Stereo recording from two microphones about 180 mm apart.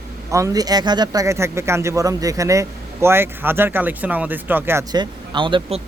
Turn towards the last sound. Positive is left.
turn(degrees=-25)  # may be behind; listen again after turning